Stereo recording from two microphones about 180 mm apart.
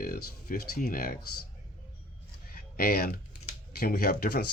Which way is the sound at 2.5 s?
55° left (ahead or behind).